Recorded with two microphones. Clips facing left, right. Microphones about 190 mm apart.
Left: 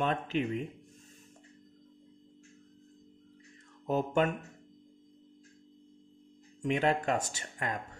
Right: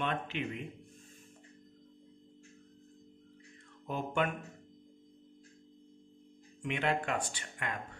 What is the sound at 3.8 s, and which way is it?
Music, 40° left (ahead or behind).